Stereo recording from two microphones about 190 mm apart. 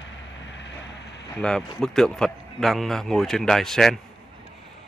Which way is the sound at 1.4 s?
5° left (ahead or behind).